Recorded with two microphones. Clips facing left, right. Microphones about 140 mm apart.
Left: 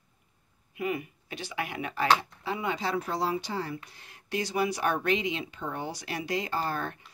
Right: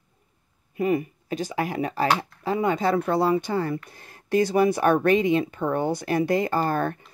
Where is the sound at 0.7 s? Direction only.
40° right (ahead or behind).